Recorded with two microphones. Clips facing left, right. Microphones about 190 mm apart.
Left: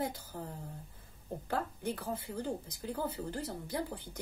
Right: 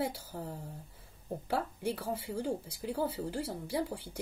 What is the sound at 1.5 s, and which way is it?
A woman's voice, 10° right (ahead or behind).